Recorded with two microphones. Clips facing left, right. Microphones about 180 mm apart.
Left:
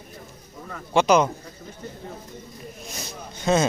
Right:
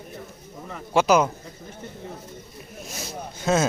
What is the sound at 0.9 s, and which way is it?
Speech, 5° right (ahead or behind).